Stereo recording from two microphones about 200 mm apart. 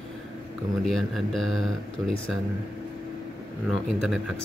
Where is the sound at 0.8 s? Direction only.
Centre (ahead or behind).